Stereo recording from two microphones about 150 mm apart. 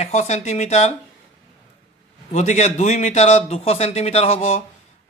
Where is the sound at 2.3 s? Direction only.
50° left (ahead or behind).